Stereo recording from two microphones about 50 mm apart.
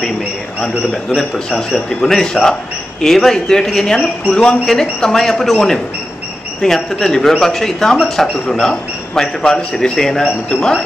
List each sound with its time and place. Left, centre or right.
0.6 s speech: centre